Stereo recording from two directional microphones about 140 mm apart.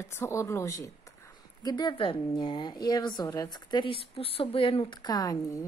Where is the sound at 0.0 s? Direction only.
20° left (ahead or behind).